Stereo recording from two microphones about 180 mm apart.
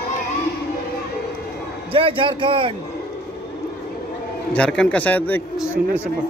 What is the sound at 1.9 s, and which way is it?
Speech, 30° right (ahead or behind).